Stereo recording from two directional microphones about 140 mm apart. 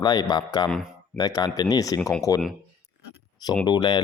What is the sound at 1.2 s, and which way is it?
Speech, 30° left (ahead or behind).